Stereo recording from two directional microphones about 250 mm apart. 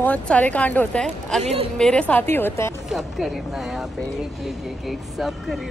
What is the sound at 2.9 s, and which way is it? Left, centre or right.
Speech, centre.